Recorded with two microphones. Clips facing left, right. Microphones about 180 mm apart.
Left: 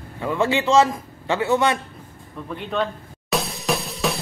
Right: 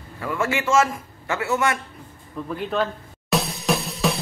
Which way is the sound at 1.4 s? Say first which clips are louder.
Left 3 dB; 30° left (ahead or behind).